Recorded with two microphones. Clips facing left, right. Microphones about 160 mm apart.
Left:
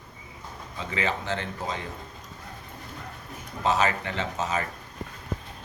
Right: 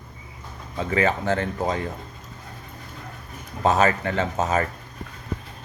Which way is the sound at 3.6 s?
50° right (ahead or behind).